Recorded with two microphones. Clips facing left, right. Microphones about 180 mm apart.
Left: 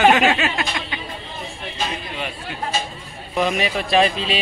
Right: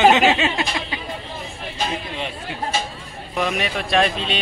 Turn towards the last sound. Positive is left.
turn(degrees=0)  # may be behind; listen again after turning